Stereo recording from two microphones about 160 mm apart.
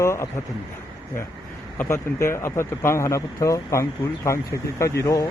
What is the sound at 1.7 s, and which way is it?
Speech, 15° left (ahead or behind).